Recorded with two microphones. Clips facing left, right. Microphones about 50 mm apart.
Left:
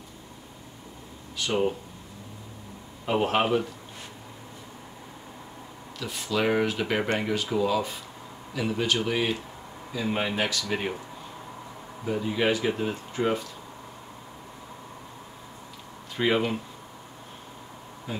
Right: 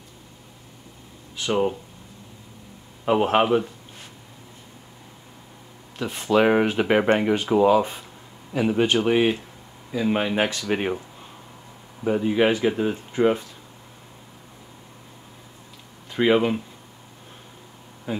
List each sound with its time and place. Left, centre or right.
1.5 s speech: centre
3.1 s speech: centre
5.9 s speech: right
9.9 s speech: centre
10.3 s speech: right
12.1 s speech: right
16.2 s speech: right